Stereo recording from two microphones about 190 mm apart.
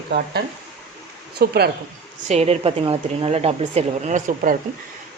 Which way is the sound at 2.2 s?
35° right (ahead or behind).